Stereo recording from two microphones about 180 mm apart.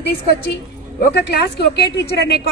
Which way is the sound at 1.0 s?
65° left (ahead or behind).